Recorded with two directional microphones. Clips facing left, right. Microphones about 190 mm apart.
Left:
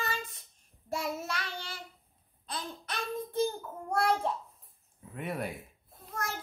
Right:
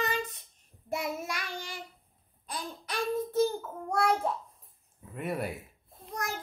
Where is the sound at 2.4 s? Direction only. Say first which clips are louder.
Right 1 dB; 10° right (ahead or behind).